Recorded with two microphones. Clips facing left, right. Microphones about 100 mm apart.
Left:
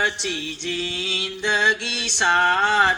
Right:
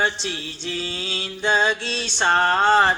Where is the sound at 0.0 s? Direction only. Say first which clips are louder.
Right 1 dB; 35° right (ahead or behind).